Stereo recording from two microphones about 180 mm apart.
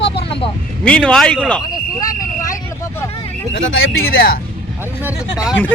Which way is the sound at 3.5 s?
90° left.